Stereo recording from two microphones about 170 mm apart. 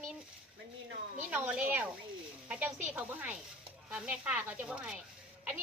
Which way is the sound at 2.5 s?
10° right (ahead or behind).